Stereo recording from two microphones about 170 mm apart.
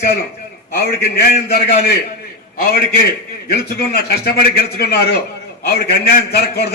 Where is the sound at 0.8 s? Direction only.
65° left (ahead or behind).